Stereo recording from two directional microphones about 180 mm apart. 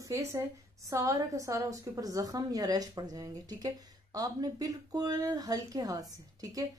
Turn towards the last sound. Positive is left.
turn(degrees=-20)  # may be behind; listen again after turning